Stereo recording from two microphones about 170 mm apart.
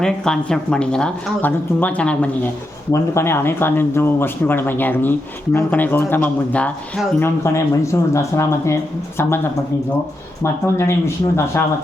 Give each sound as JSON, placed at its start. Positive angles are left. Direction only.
{"t": 0.0, "sound": "speech", "side_deg": 5}
{"t": 10.4, "sound": "speech", "side_deg": 15}